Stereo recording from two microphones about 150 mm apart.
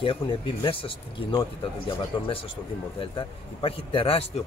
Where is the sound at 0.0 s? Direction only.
35° left (ahead or behind).